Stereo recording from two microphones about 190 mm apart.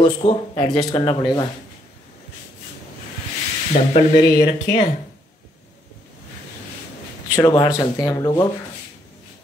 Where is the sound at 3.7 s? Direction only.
45° left (ahead or behind).